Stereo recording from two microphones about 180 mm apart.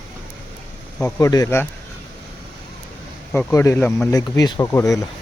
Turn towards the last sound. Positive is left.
turn(degrees=15)  # may be behind; listen again after turning